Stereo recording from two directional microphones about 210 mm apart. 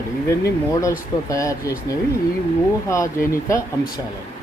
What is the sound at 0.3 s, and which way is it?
Speech, 15° left (ahead or behind).